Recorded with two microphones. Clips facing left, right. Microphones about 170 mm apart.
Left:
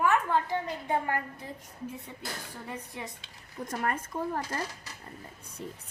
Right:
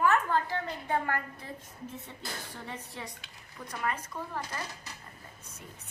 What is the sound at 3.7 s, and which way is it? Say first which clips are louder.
Speech: left 2 dB; 45° left (ahead or behind).